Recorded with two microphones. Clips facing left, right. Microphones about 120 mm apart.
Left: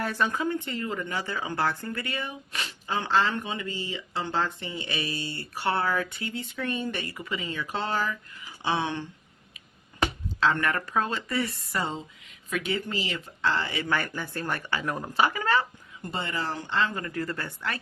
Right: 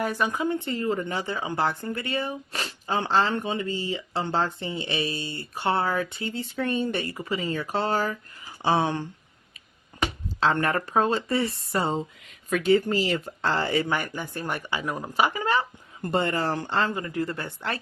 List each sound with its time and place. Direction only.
0.0 s speech: 15° right (ahead or behind); by 9.0 s 40° right (ahead or behind)
10.2 s speech: 30° right (ahead or behind)
12.5 s speech: 40° right (ahead or behind)
13.8 s speech: 15° right (ahead or behind)
16.0 s speech: 50° right (ahead or behind)
16.9 s speech: 20° right (ahead or behind)